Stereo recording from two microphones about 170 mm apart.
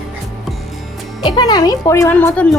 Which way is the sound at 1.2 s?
25° left (ahead or behind).